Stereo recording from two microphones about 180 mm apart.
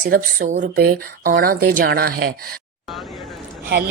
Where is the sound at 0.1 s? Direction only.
55° right (ahead or behind).